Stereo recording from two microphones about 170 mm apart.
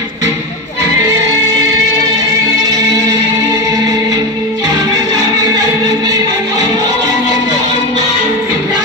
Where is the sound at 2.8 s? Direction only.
20° right (ahead or behind).